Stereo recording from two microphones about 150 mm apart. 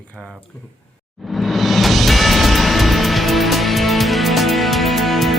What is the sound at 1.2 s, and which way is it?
Music, centre (ahead or behind).